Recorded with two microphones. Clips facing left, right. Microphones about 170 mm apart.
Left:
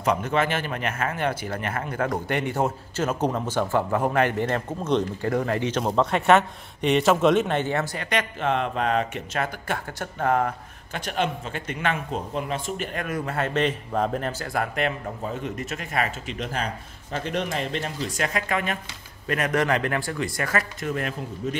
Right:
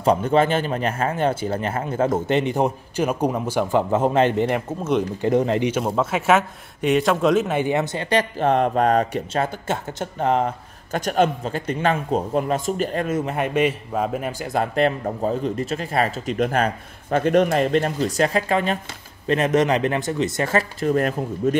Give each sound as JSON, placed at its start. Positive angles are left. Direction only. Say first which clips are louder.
{"t": 0.0, "sound": "speech", "louder": "right 6 dB", "side_deg": -30}
{"t": 5.2, "sound": "speech", "louder": "right 5 dB", "side_deg": -20}
{"t": 5.7, "sound": "speech", "louder": "right 1 dB", "side_deg": -5}
{"t": 10.9, "sound": "a man's voice", "louder": "right 7 dB", "side_deg": -40}
{"t": 13.0, "sound": "a man's voice", "louder": "right 4 dB", "side_deg": -20}
{"t": 14.4, "sound": "speech", "louder": "right 4 dB", "side_deg": -25}
{"t": 14.8, "sound": "a man's voice", "louder": "right 7 dB", "side_deg": -35}
{"t": 16.3, "sound": "speech", "louder": "right 10 dB", "side_deg": -55}
{"t": 20.9, "sound": "speech", "louder": "right 9 dB", "side_deg": -45}